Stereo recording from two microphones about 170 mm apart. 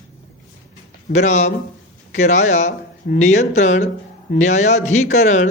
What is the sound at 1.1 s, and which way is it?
Speech, 40° left (ahead or behind).